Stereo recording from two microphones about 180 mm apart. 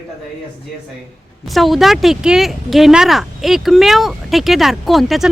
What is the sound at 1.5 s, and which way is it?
Speech, centre (ahead or behind).